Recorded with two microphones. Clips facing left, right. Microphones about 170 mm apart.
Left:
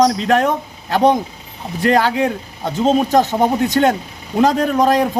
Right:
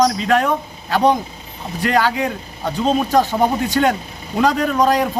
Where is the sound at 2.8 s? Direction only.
20° left (ahead or behind).